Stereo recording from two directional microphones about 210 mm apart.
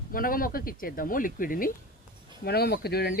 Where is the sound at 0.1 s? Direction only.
45° left (ahead or behind).